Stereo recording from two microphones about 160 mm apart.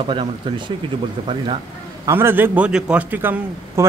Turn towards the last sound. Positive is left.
turn(degrees=-10)  # may be behind; listen again after turning